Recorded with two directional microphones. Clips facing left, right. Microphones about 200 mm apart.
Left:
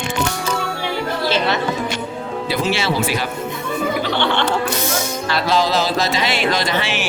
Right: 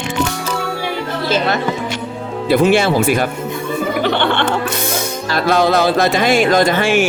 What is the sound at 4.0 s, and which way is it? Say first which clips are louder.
Snicker: right 3 dB; 55° right (ahead or behind).